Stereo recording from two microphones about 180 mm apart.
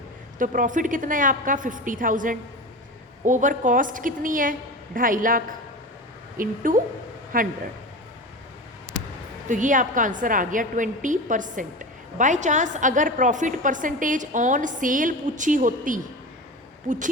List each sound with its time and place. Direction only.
0.3 s a woman's voice: 45° right (ahead or behind)
9.5 s a woman's voice: 45° right (ahead or behind)